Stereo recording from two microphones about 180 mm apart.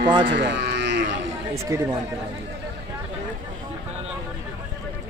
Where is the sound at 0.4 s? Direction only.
75° right (ahead or behind).